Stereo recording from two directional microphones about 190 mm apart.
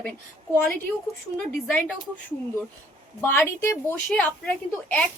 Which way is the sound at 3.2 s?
10° left (ahead or behind).